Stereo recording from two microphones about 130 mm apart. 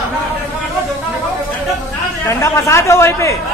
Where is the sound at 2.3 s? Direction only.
20° left (ahead or behind).